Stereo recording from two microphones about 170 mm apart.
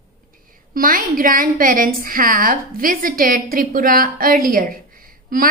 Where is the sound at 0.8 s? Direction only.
55° right (ahead or behind).